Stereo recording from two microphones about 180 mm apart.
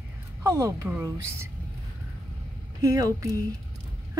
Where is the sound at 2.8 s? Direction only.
20° right (ahead or behind).